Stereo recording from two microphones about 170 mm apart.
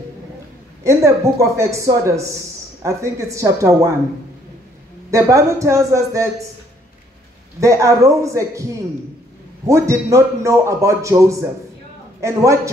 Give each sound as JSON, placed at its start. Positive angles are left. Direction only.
{"t": 0.8, "sound": "a man's voice", "side_deg": -15}
{"t": 5.1, "sound": "a man's voice", "side_deg": -20}
{"t": 7.6, "sound": "a man's voice", "side_deg": -20}
{"t": 9.7, "sound": "a man's voice", "side_deg": -15}